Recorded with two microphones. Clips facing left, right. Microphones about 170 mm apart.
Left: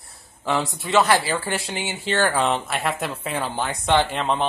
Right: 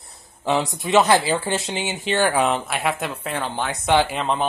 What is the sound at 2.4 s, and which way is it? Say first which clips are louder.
Speech: right 1 dB; centre (ahead or behind).